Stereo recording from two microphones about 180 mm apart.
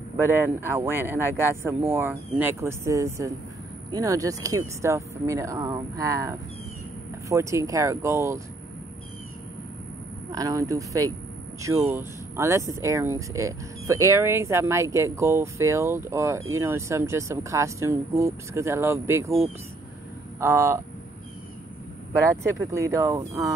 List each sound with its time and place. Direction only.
0.2 s speech: 15° right (ahead or behind)
10.3 s speech: 20° right (ahead or behind)
22.3 s speech: 15° right (ahead or behind)